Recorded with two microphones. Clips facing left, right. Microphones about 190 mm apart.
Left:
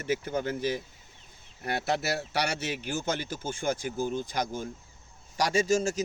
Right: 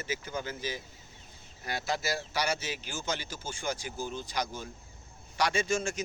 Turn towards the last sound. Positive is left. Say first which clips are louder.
# left 5 dB
turn(degrees=40)  # may be behind; listen again after turning